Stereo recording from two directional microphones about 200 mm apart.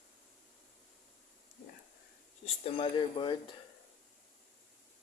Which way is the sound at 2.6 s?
25° left (ahead or behind).